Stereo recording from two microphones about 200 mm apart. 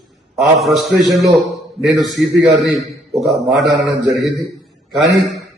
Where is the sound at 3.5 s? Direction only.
60° right (ahead or behind).